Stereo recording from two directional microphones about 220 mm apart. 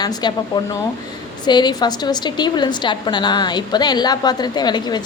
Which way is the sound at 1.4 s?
20° left (ahead or behind).